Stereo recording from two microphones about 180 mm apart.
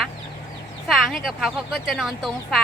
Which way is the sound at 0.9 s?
Centre (ahead or behind).